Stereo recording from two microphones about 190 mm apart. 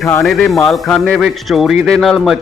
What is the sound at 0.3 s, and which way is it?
Speech, centre (ahead or behind).